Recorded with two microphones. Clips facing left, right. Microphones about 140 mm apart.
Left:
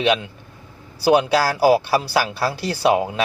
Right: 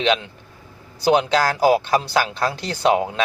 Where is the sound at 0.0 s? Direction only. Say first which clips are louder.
Left 1 dB; 10° left (ahead or behind).